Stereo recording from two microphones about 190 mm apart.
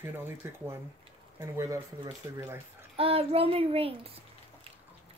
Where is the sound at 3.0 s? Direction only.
30° right (ahead or behind).